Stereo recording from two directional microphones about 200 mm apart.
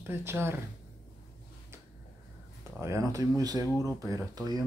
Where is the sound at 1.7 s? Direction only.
15° right (ahead or behind).